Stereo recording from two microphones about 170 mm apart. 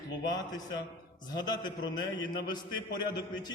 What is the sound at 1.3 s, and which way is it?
Speech, 25° left (ahead or behind).